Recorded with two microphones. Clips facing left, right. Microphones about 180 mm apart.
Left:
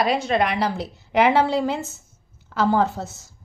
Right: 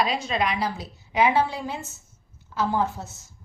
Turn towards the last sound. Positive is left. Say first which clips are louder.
# left 5 dB
turn(degrees=85)